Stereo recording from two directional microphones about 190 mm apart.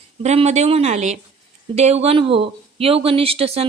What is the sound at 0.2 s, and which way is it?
A woman's voice, 35° right (ahead or behind).